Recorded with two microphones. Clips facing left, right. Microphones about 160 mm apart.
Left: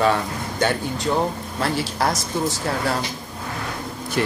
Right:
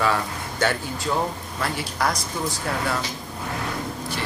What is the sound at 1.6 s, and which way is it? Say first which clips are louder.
Speech: left 3 dB; 30° left (ahead or behind).